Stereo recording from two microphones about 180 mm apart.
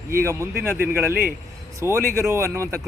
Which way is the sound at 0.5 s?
60° right (ahead or behind).